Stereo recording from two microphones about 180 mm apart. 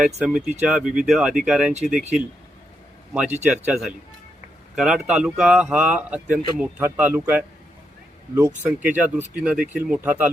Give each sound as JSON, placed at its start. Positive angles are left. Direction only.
{"t": 0.2, "sound": "speech", "side_deg": -5}
{"t": 8.6, "sound": "speech", "side_deg": -10}